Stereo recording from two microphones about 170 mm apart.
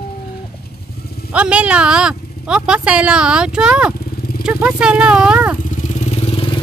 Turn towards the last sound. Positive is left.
turn(degrees=35)  # may be behind; listen again after turning